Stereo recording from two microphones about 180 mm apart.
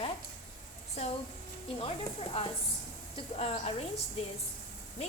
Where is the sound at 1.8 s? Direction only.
30° left (ahead or behind).